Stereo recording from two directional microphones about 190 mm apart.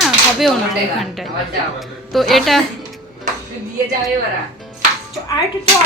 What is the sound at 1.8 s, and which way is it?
Speech, centre (ahead or behind).